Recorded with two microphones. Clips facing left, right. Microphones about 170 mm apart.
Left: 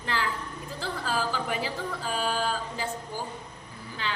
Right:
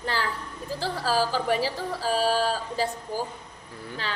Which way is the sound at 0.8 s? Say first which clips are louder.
Right 5 dB; 35° right (ahead or behind).